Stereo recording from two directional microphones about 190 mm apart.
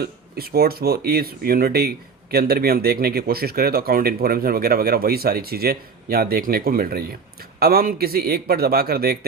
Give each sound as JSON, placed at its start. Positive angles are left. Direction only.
{"t": 0.0, "sound": "speech", "side_deg": -55}